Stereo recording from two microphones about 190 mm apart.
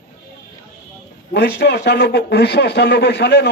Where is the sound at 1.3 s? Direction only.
60° left (ahead or behind).